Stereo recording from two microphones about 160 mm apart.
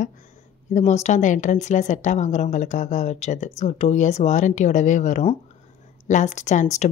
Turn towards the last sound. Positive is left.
turn(degrees=45)  # may be behind; listen again after turning